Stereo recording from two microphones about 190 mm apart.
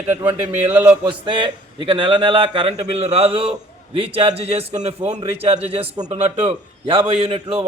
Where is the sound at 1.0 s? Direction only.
25° right (ahead or behind).